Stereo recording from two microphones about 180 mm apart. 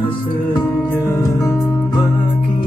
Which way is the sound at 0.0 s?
25° left (ahead or behind).